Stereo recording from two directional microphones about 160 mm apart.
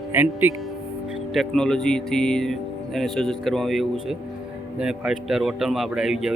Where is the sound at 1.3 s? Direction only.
Centre (ahead or behind).